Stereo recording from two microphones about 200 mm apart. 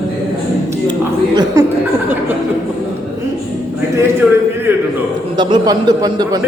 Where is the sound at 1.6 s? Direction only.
15° right (ahead or behind).